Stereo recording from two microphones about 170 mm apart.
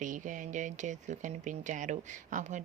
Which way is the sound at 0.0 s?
50° right (ahead or behind).